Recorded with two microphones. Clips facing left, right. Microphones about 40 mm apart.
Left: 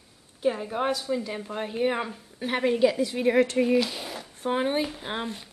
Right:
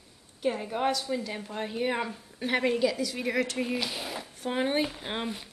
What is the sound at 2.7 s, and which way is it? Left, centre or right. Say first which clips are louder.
Speech: left 5 dB; left.